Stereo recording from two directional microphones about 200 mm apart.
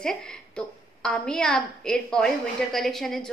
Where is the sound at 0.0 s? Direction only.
5° left (ahead or behind).